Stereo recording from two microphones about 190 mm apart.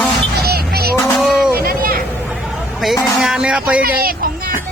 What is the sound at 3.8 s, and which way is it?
Speech, 50° right (ahead or behind).